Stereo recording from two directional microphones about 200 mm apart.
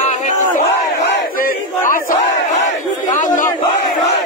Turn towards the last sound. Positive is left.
turn(degrees=40)  # may be behind; listen again after turning